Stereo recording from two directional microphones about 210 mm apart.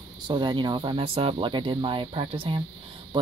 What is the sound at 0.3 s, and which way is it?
Speech, 20° right (ahead or behind).